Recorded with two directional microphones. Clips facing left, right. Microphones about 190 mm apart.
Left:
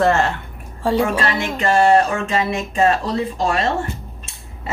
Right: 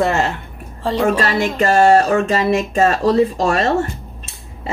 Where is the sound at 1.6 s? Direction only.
40° right (ahead or behind).